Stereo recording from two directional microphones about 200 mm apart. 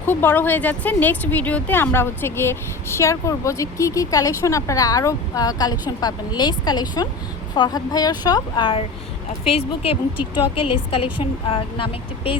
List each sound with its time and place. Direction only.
0.1 s a woman's voice: 10° left (ahead or behind); by 12.4 s 25° left (ahead or behind)